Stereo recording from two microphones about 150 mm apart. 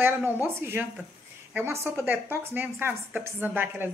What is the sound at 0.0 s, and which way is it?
A woman's voice, 15° right (ahead or behind).